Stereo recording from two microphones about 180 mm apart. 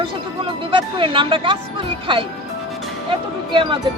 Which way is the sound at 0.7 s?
30° right (ahead or behind).